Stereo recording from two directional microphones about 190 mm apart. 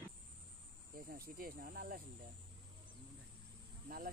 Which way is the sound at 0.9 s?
50° right (ahead or behind).